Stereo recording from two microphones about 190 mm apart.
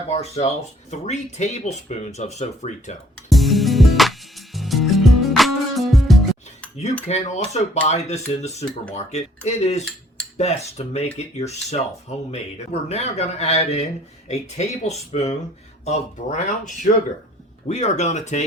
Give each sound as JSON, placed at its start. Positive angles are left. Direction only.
{"t": 0.1, "sound": "speech", "side_deg": 35}
{"t": 3.2, "sound": "music", "side_deg": 0}
{"t": 7.1, "sound": "speech", "side_deg": 35}